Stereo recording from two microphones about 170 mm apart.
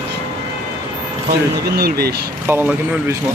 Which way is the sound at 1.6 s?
65° right (ahead or behind).